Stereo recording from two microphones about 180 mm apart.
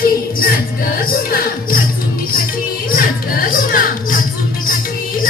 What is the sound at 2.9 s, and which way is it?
Music, 50° left (ahead or behind).